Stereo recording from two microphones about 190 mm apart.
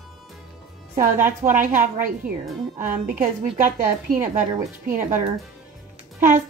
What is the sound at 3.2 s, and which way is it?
A woman's voice, 45° right (ahead or behind).